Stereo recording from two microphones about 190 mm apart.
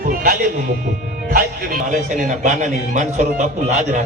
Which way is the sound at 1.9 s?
40° right (ahead or behind).